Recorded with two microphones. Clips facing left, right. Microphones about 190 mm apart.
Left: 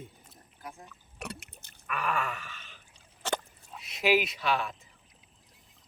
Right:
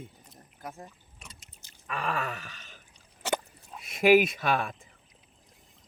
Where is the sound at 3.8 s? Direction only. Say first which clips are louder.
Right 6 dB; 50° right (ahead or behind).